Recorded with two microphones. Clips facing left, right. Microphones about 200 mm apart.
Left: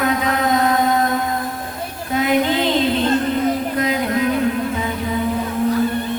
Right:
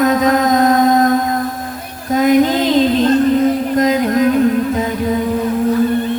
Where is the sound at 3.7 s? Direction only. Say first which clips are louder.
Right 6 dB; 40° right (ahead or behind).